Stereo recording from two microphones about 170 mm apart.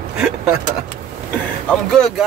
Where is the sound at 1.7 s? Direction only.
5° left (ahead or behind).